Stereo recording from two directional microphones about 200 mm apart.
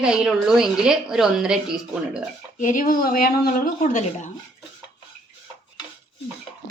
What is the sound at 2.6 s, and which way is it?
Speech, 40° left (ahead or behind).